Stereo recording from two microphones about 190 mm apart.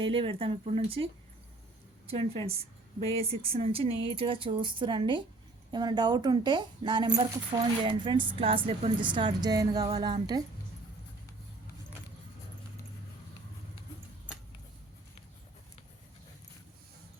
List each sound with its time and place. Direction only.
0.0 s a woman's voice: 30° right (ahead or behind)